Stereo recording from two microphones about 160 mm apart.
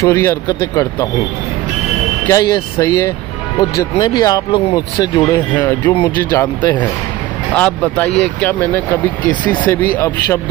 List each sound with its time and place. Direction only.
0.0 s speech: 15° left (ahead or behind)
2.2 s speech: 20° left (ahead or behind)